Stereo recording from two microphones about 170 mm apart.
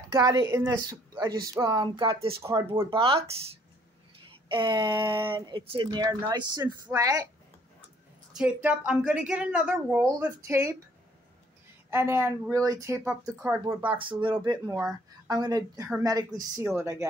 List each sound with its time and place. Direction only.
0.1 s speech: 20° right (ahead or behind)
2.9 s speech: 30° right (ahead or behind)
4.5 s speech: 25° right (ahead or behind)
8.4 s a woman's voice: 5° right (ahead or behind)
11.9 s a woman's voice: 15° right (ahead or behind)
13.9 s speech: 30° right (ahead or behind)